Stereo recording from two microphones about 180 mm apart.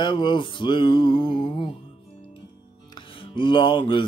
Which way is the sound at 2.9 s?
25° left (ahead or behind).